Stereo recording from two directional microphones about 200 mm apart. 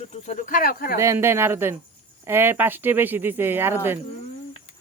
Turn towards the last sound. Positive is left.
turn(degrees=-10)  # may be behind; listen again after turning